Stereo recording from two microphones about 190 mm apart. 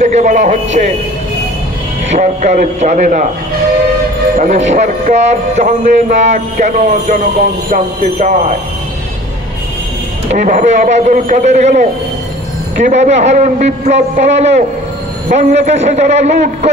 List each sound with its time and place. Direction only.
0.1 s a man's voice: 40° right (ahead or behind)
2.1 s a man's voice: 40° right (ahead or behind)
4.4 s a man's voice: 40° right (ahead or behind)
5.6 s music: 45° right (ahead or behind)
10.3 s a man's voice: 45° right (ahead or behind)